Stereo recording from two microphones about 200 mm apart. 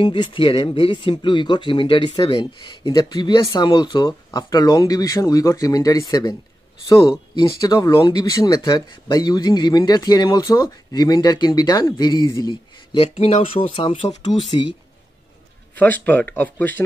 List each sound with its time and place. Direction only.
0.0 s speech: 25° left (ahead or behind)
15.7 s speech: 10° left (ahead or behind)